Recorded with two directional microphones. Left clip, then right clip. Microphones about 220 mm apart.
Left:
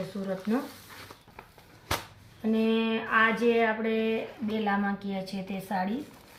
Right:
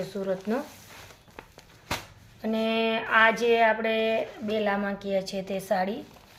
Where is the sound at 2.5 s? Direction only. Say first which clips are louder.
Right 2 dB; 50° right (ahead or behind).